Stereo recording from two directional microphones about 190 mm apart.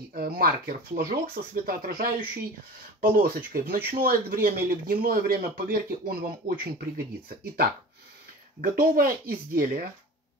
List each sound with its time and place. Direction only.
0.1 s speech: 50° right (ahead or behind)